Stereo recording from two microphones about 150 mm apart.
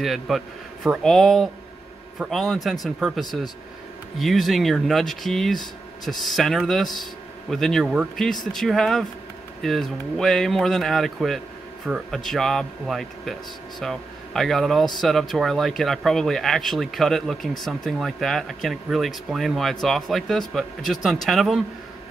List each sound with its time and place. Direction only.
0.0 s speech: centre (ahead or behind)